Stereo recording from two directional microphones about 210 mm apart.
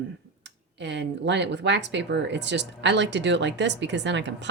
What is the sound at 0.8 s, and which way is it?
Speech, 55° right (ahead or behind).